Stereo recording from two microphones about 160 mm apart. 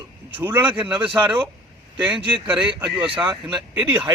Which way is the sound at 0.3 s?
10° right (ahead or behind).